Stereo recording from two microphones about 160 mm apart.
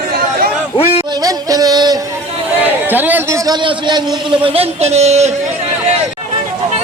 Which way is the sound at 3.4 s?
25° right (ahead or behind).